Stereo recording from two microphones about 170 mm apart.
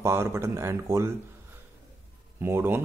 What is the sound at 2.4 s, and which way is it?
Speech, 15° right (ahead or behind).